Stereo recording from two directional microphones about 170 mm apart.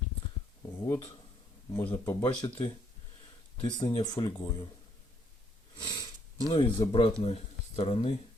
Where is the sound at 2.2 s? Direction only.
35° left (ahead or behind).